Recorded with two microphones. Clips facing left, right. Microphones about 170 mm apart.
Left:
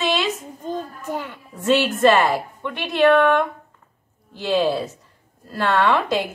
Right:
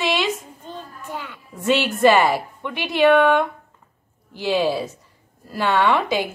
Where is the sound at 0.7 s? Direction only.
40° left (ahead or behind).